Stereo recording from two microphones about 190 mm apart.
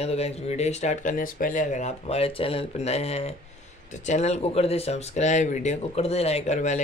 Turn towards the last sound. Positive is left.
turn(degrees=40)  # may be behind; listen again after turning